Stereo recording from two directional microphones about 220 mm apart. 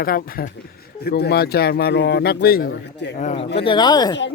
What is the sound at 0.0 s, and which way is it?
A man's voice, 40° left (ahead or behind).